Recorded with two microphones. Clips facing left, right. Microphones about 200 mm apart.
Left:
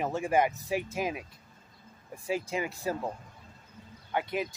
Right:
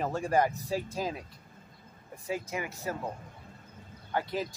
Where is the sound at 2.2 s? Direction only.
25° left (ahead or behind).